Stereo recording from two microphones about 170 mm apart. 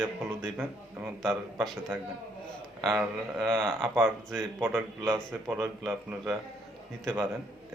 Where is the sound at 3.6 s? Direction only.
Centre (ahead or behind).